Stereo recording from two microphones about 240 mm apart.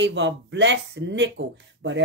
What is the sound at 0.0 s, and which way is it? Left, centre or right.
Speech, right.